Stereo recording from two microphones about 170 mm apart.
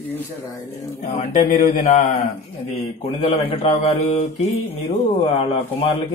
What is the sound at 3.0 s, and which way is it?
Speech, 35° left (ahead or behind).